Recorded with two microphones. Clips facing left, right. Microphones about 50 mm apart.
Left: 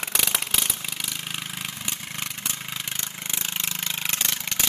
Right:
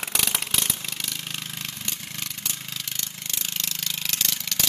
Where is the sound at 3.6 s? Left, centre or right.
Left.